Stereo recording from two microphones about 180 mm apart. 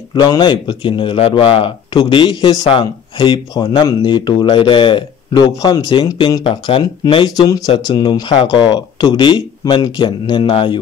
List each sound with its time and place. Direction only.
0.1 s speech: 25° left (ahead or behind)